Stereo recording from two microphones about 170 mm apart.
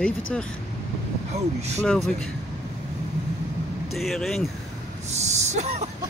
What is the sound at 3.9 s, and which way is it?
Speech, centre (ahead or behind).